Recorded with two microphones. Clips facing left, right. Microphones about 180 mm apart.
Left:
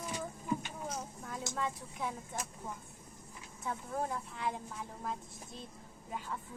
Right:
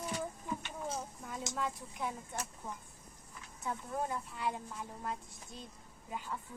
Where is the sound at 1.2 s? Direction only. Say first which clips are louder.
Left 2 dB; centre (ahead or behind).